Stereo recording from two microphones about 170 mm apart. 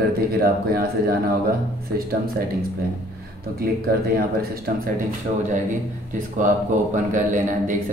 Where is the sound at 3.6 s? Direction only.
60° right (ahead or behind).